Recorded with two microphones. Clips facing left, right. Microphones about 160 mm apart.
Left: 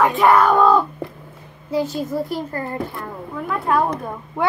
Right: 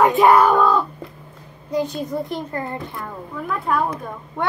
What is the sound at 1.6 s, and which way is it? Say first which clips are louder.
Speech: left 1 dB; 5° left (ahead or behind).